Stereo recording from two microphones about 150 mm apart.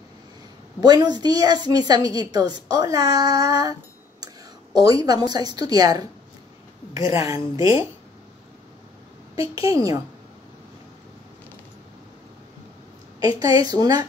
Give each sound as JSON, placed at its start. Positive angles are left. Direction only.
{"t": 0.7, "sound": "a woman's voice", "side_deg": -25}
{"t": 4.7, "sound": "a woman's voice", "side_deg": -25}
{"t": 9.3, "sound": "a woman's voice", "side_deg": -20}
{"t": 13.2, "sound": "a woman's voice", "side_deg": -25}